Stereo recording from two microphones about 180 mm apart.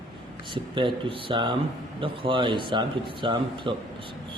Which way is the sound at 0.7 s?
30° right (ahead or behind).